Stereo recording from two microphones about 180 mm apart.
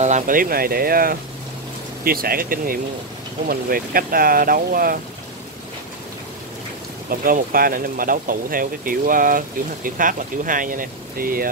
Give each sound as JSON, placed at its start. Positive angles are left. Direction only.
{"t": 0.0, "sound": "speech", "side_deg": -45}
{"t": 7.1, "sound": "speech", "side_deg": -55}